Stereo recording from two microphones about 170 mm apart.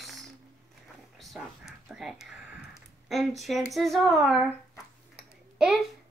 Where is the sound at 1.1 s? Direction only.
Centre (ahead or behind).